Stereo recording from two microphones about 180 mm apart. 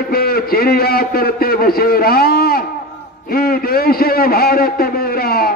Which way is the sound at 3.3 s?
55° left (ahead or behind).